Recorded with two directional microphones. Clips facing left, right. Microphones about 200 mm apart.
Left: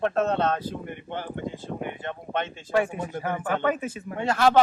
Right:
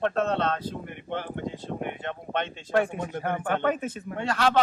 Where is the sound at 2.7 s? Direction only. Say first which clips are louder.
Even; 5° left (ahead or behind).